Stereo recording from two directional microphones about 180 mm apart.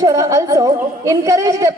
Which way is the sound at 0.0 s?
20° right (ahead or behind).